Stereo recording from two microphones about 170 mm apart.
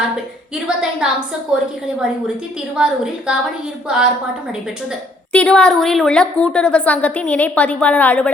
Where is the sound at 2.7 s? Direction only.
5° right (ahead or behind).